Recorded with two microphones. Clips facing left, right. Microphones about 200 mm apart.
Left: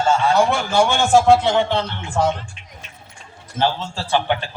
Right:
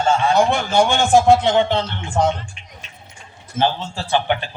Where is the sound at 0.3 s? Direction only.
15° right (ahead or behind).